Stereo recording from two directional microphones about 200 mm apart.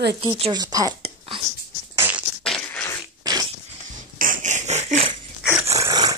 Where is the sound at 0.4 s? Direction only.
20° right (ahead or behind).